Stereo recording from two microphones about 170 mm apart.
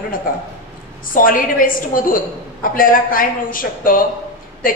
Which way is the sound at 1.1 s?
55° left (ahead or behind).